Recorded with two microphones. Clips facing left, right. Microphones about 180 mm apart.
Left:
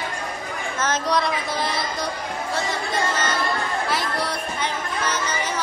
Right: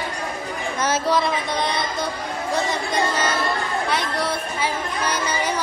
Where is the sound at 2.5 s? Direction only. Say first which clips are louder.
Right 3 dB; 15° right (ahead or behind).